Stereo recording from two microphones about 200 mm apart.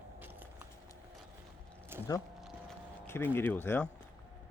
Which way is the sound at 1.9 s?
10° right (ahead or behind).